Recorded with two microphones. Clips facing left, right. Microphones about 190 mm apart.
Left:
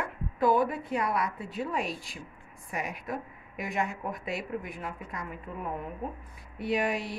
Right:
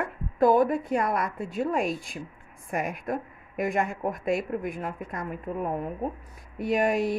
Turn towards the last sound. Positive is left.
turn(degrees=-45)  # may be behind; listen again after turning